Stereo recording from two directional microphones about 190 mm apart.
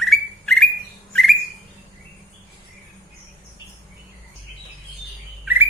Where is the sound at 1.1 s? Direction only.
Centre (ahead or behind).